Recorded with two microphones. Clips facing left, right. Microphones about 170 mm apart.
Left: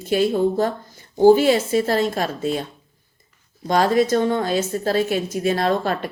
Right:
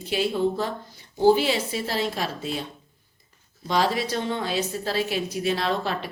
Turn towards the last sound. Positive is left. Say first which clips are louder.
# left 6 dB
turn(degrees=50)  # may be behind; listen again after turning